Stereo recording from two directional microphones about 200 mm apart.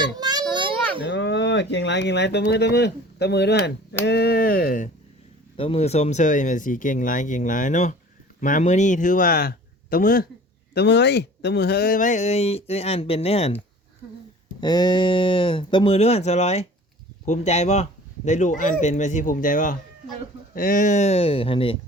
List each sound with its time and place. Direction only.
0.2 s children playing: 20° right (ahead or behind)
1.0 s speech: 60° left (ahead or behind); by 4.9 s 45° left (ahead or behind)
5.5 s speech: 30° left (ahead or behind); by 10.2 s 45° left (ahead or behind)
10.8 s speech: 60° left (ahead or behind); by 13.6 s 30° left (ahead or behind)
14.6 s speech: 20° left (ahead or behind)